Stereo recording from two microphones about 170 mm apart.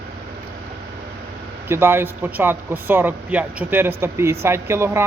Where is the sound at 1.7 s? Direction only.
15° right (ahead or behind).